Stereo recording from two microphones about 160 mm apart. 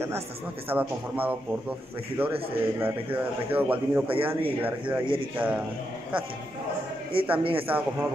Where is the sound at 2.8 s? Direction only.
10° right (ahead or behind).